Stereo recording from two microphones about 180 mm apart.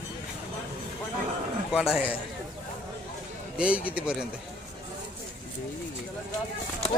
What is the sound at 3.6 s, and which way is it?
Speech, 5° right (ahead or behind).